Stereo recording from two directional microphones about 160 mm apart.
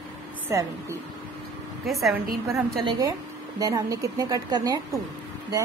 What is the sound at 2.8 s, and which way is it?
A woman's voice, 25° right (ahead or behind).